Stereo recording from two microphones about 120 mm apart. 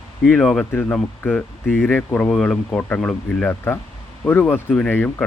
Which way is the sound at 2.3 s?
5° left (ahead or behind).